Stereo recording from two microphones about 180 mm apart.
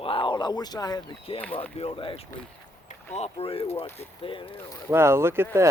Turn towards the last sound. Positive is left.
turn(degrees=-15)  # may be behind; listen again after turning